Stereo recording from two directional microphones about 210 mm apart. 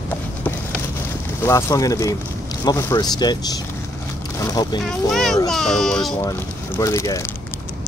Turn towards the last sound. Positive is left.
turn(degrees=15)  # may be behind; listen again after turning